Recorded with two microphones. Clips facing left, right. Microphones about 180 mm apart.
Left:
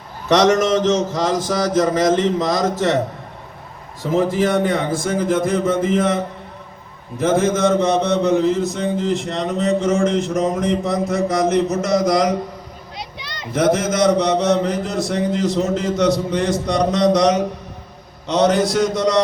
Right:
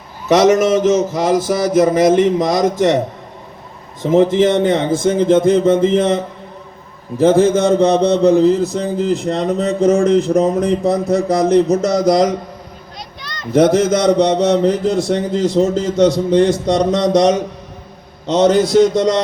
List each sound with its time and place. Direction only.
0.3 s mantra: 5° right (ahead or behind)
4.0 s speech: 20° right (ahead or behind)
7.2 s mantra: 30° right (ahead or behind)
13.5 s mantra: 30° right (ahead or behind)
18.3 s speech: 30° right (ahead or behind)